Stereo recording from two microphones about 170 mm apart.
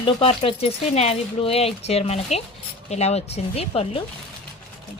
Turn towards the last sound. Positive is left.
turn(degrees=35)  # may be behind; listen again after turning